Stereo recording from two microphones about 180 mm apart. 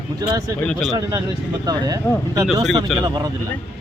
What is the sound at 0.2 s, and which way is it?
Speech, 20° right (ahead or behind).